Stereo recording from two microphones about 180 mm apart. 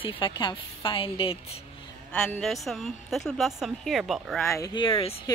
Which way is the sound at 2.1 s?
5° left (ahead or behind).